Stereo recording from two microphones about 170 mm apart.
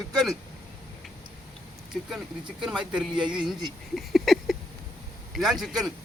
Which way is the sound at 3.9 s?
Centre (ahead or behind).